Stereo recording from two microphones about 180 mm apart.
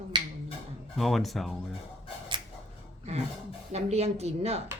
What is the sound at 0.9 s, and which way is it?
Speech, centre (ahead or behind).